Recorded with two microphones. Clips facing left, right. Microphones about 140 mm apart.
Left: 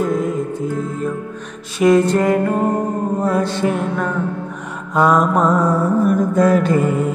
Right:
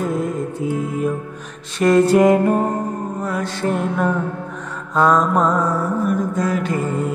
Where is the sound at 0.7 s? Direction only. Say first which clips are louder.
Even; 40° left (ahead or behind).